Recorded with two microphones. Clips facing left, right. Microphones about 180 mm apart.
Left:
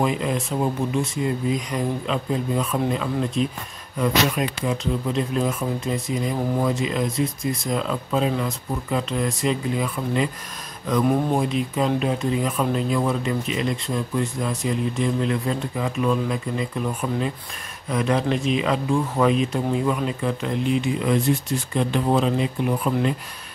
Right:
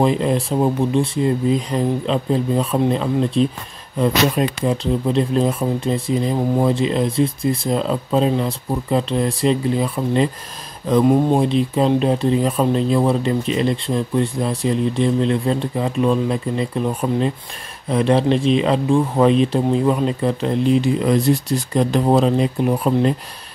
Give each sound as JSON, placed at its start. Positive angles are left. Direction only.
{"t": 0.0, "sound": "speech", "side_deg": -35}